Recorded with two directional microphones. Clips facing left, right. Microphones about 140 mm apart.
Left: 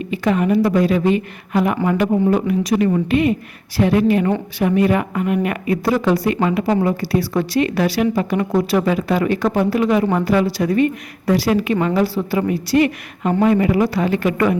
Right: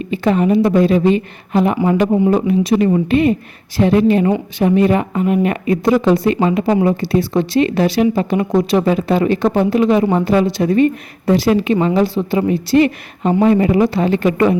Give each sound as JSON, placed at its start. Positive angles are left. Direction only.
{"t": 0.1, "sound": "speech", "side_deg": -30}